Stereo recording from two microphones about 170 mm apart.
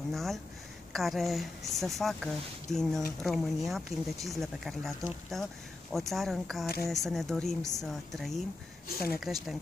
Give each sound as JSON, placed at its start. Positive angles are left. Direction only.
{"t": 0.1, "sound": "speech", "side_deg": 0}
{"t": 8.9, "sound": "speech", "side_deg": 65}
{"t": 9.2, "sound": "speech", "side_deg": 0}